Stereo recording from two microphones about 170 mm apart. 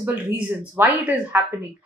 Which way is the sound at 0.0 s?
10° right (ahead or behind).